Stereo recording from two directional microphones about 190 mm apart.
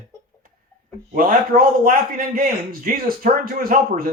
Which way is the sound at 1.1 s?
45° right (ahead or behind).